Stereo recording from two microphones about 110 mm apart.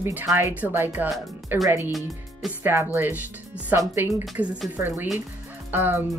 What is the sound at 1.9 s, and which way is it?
Speech, centre (ahead or behind).